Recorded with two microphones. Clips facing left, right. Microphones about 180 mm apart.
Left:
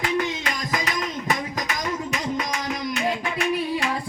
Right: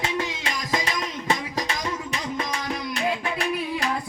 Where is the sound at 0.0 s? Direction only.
25° right (ahead or behind).